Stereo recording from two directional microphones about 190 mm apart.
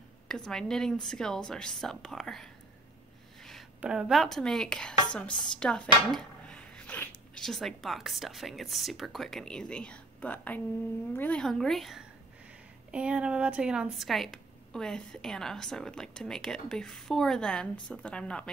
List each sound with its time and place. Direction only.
0.5 s a woman's voice: 5° left (ahead or behind)